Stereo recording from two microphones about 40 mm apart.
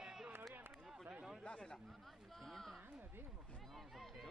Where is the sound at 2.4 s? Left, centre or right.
Centre.